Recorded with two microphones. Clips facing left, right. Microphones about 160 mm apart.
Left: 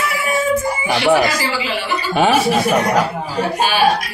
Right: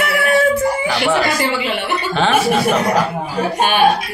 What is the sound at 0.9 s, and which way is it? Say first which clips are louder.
Speech: left 8 dB; 20° left (ahead or behind).